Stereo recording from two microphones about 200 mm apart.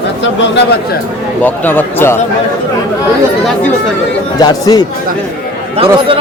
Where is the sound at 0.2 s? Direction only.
60° left (ahead or behind).